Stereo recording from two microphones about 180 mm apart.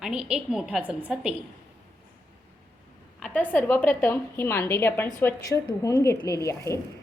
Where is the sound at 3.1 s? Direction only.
5° left (ahead or behind).